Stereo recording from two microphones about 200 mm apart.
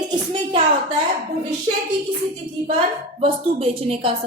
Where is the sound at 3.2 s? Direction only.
30° right (ahead or behind).